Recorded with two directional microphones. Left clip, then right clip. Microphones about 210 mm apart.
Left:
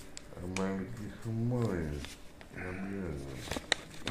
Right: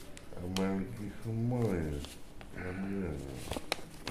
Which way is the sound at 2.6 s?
5° right (ahead or behind).